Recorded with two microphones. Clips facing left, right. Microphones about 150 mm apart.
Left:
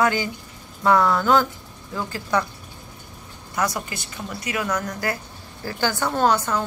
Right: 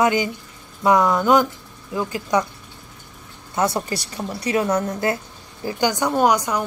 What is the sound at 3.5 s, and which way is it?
A woman's voice, 30° right (ahead or behind).